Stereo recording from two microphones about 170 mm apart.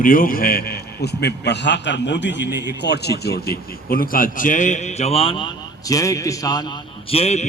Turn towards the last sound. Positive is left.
turn(degrees=40)  # may be behind; listen again after turning